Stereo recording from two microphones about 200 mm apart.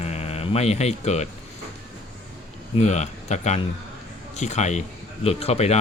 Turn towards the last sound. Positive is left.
turn(degrees=30)  # may be behind; listen again after turning